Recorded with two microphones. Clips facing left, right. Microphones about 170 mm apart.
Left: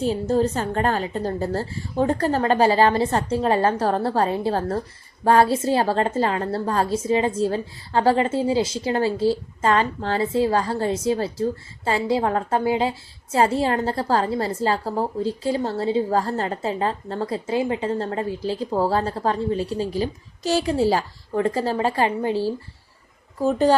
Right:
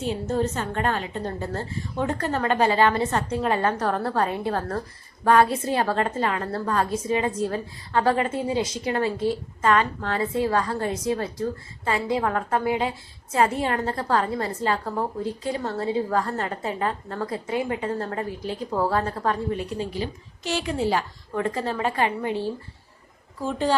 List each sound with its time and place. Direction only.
0.0 s a woman's voice: 35° left (ahead or behind)